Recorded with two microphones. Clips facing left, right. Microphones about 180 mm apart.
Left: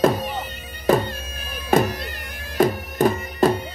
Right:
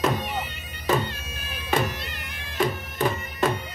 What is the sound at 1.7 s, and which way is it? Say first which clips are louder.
Music: left 7 dB; 40° left (ahead or behind).